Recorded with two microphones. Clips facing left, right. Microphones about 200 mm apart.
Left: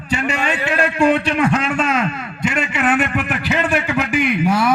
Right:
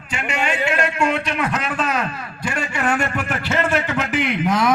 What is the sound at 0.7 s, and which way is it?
A man's voice, 30° left (ahead or behind).